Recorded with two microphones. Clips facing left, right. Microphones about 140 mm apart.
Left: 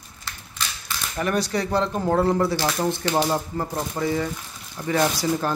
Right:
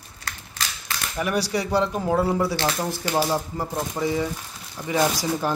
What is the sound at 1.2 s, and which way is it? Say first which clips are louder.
Speech: left 1 dB; 10° right (ahead or behind).